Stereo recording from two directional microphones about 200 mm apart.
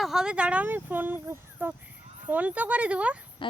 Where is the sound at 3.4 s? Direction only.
25° left (ahead or behind).